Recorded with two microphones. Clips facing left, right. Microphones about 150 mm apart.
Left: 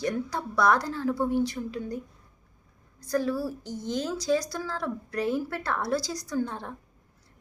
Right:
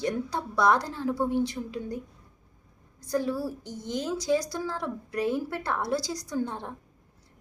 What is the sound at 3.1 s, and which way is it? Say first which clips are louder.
A child's voice: left 1 dB; 20° right (ahead or behind).